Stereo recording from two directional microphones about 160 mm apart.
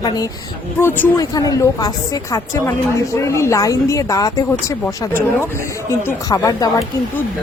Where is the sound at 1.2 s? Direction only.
20° left (ahead or behind).